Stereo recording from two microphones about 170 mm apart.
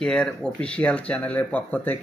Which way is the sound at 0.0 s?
5° left (ahead or behind).